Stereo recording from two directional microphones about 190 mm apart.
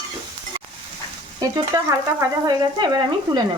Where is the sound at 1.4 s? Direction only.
20° right (ahead or behind).